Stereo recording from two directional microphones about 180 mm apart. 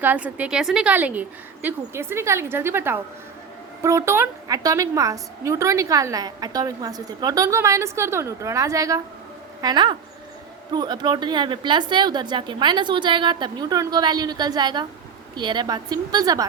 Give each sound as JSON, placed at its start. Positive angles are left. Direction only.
{"t": 0.0, "sound": "a woman's voice", "side_deg": -10}